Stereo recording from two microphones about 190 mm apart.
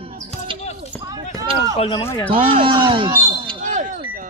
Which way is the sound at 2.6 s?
25° right (ahead or behind).